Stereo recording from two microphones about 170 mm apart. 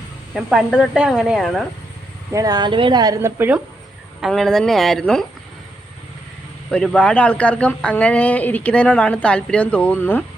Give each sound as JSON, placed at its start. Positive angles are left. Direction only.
{"t": 0.3, "sound": "a woman's voice", "side_deg": -5}
{"t": 2.3, "sound": "speech", "side_deg": -20}
{"t": 4.2, "sound": "a woman's voice", "side_deg": 0}
{"t": 6.7, "sound": "a man's voice", "side_deg": 5}